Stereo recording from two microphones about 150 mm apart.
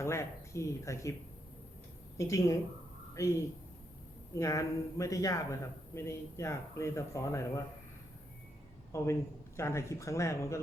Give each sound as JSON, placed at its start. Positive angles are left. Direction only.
{"t": 0.0, "sound": "a man's voice", "side_deg": 20}
{"t": 2.1, "sound": "a man's voice", "side_deg": 20}
{"t": 4.4, "sound": "a man's voice", "side_deg": 20}
{"t": 8.9, "sound": "a man's voice", "side_deg": 20}